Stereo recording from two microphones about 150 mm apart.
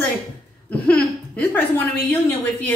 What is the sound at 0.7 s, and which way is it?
A woman's voice, 10° left (ahead or behind).